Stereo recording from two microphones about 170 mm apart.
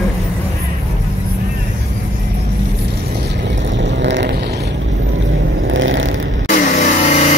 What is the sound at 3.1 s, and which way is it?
Vehicle, 90° right.